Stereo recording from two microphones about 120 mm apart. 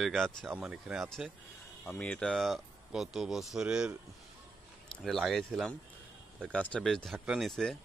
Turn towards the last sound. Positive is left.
turn(degrees=5)  # may be behind; listen again after turning